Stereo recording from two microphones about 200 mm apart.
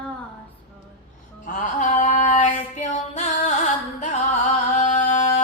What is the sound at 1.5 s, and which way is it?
Female singing, 40° left (ahead or behind).